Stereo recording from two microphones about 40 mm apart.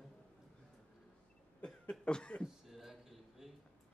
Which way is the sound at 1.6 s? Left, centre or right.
Left.